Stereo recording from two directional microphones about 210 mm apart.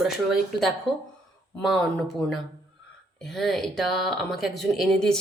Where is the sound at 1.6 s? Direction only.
Centre (ahead or behind).